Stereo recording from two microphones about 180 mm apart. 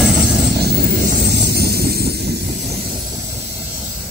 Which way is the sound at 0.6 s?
60° right (ahead or behind).